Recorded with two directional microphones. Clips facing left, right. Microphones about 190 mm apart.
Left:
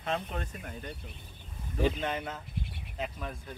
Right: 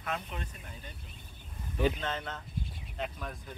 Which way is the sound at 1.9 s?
15° left (ahead or behind).